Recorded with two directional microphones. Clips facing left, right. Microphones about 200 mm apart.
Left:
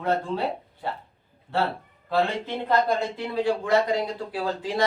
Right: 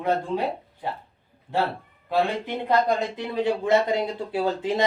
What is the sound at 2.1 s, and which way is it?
Speech, 15° right (ahead or behind).